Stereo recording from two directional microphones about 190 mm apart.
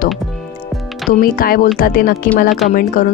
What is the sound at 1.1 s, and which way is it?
A woman's voice, 50° left (ahead or behind).